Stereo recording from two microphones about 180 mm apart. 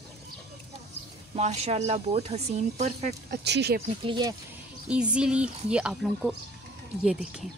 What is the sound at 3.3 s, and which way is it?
Speech, 70° right (ahead or behind).